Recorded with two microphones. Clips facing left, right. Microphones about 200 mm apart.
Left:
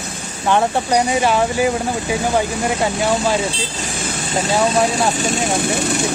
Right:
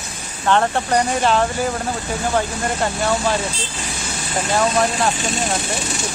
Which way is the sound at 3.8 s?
50° left (ahead or behind).